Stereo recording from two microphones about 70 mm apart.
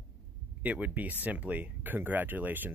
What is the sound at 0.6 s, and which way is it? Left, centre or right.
Speech, right.